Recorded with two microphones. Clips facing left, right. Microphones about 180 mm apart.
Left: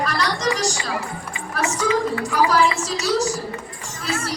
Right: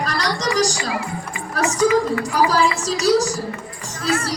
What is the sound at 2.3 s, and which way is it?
Speech, 35° right (ahead or behind).